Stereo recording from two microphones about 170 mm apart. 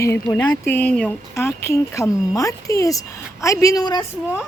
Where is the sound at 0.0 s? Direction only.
15° left (ahead or behind).